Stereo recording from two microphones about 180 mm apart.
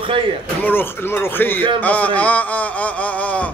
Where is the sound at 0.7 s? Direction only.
10° left (ahead or behind).